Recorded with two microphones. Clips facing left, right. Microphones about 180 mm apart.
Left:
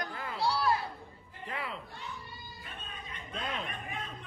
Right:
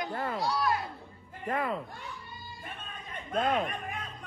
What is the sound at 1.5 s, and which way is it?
Music, 45° right (ahead or behind).